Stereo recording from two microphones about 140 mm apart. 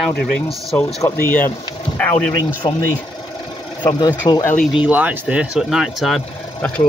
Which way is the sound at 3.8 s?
30° left (ahead or behind).